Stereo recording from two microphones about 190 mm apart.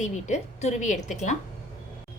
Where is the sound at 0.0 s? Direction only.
35° left (ahead or behind).